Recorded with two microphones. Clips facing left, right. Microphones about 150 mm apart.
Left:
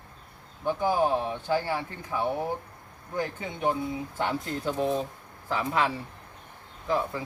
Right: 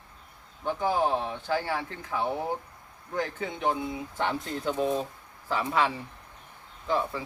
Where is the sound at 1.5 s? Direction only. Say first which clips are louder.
Left 1 dB; 15° left (ahead or behind).